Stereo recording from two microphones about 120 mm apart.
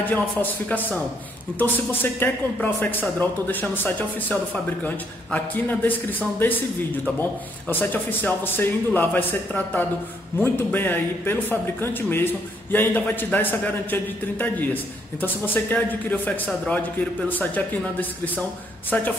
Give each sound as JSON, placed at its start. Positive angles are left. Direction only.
{"t": 0.0, "sound": "a man's voice", "side_deg": 15}
{"t": 18.9, "sound": "a man's voice", "side_deg": 15}